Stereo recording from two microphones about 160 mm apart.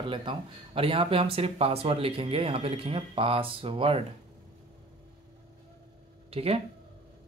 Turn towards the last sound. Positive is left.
turn(degrees=-40)  # may be behind; listen again after turning